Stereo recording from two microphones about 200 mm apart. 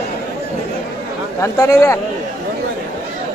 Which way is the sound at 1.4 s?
15° left (ahead or behind).